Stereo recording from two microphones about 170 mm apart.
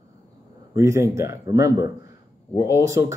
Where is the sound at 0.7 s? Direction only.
15° right (ahead or behind).